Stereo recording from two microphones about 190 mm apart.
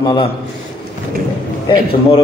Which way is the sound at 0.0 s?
25° left (ahead or behind).